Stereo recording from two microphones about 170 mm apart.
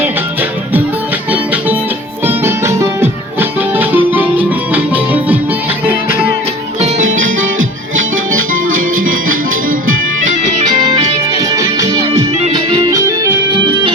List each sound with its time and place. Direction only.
2.2 s music: 15° right (ahead or behind)
11.3 s music: 20° right (ahead or behind)